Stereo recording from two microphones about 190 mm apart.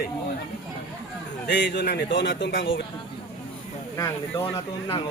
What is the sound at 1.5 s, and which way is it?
Speech, 65° left (ahead or behind).